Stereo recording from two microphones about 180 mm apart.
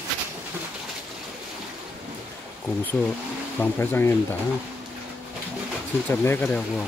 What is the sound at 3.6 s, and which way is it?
Speech, 10° left (ahead or behind).